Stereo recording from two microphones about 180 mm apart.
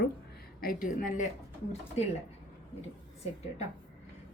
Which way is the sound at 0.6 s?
50° left (ahead or behind).